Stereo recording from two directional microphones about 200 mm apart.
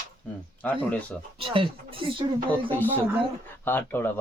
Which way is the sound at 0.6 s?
10° left (ahead or behind).